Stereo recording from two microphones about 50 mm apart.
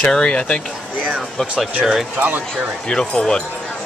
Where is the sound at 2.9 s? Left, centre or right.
Centre.